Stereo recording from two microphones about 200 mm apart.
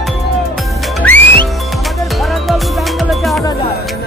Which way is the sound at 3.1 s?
Centre (ahead or behind).